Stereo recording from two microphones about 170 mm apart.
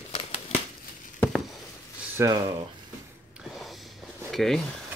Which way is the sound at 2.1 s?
15° right (ahead or behind).